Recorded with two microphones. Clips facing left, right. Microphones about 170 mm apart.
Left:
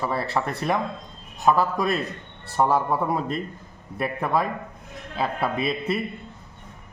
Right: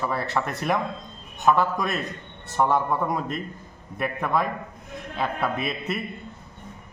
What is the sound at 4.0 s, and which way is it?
Speech, 30° left (ahead or behind).